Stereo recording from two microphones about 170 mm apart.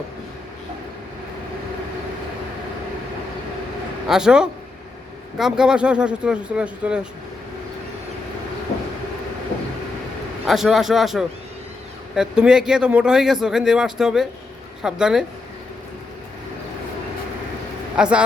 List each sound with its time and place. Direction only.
4.1 s speech: 5° right (ahead or behind)
10.4 s speech: centre (ahead or behind)
17.9 s speech: 5° right (ahead or behind)